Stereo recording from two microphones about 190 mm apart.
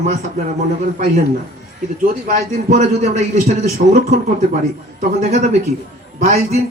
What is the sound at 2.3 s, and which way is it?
A man's voice, 40° right (ahead or behind).